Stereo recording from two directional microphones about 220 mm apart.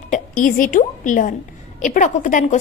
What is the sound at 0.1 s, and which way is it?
A woman's voice, 40° left (ahead or behind).